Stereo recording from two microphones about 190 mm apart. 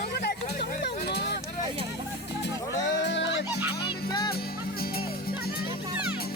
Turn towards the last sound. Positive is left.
turn(degrees=-10)  # may be behind; listen again after turning